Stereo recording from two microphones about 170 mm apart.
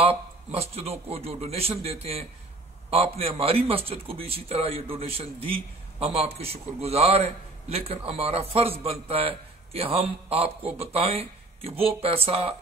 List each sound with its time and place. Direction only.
0.0 s a man's voice: 35° right (ahead or behind)